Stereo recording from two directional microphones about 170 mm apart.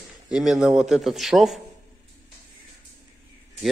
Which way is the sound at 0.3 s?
5° right (ahead or behind).